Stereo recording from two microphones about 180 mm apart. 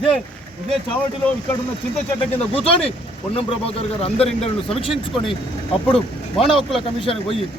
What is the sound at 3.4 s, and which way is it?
Speech, 35° left (ahead or behind).